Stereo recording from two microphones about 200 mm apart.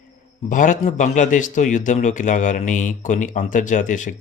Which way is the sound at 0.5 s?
40° left (ahead or behind).